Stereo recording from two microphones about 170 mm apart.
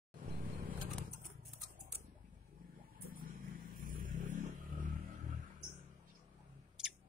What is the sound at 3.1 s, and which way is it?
Vehicle, 55° right (ahead or behind).